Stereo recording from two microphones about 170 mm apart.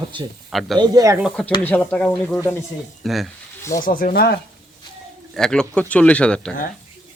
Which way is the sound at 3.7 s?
55° left (ahead or behind).